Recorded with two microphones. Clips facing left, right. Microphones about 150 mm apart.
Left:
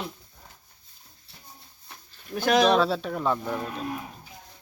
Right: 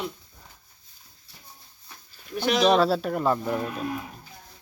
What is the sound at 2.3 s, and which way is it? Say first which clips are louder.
Speech: left 2 dB; 50° left (ahead or behind).